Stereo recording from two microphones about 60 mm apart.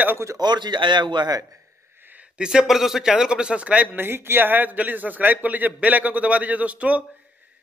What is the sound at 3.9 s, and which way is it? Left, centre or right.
A man's voice, right.